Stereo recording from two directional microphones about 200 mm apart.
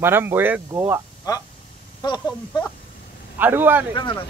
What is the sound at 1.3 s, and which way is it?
Speech, 20° left (ahead or behind).